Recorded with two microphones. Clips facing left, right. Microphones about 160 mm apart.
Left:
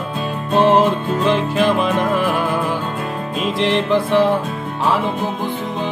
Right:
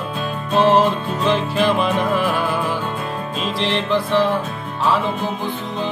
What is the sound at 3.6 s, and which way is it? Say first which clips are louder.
Music: left 4 dB; 15° left (ahead or behind).